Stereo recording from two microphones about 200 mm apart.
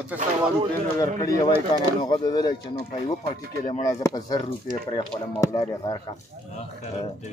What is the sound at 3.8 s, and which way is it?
Speech, 15° left (ahead or behind).